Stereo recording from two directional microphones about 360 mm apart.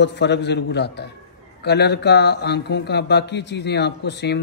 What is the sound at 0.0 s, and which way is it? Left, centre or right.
Speech, left.